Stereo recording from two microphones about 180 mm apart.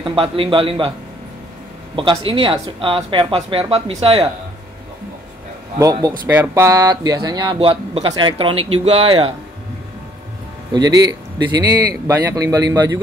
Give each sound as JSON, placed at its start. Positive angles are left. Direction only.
{"t": 0.0, "sound": "speech", "side_deg": -30}
{"t": 2.0, "sound": "speech", "side_deg": -30}
{"t": 5.8, "sound": "speech", "side_deg": -20}
{"t": 10.7, "sound": "speech", "side_deg": -20}